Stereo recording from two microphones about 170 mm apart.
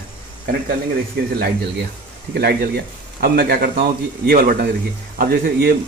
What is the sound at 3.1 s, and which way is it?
A man's voice, 65° right (ahead or behind).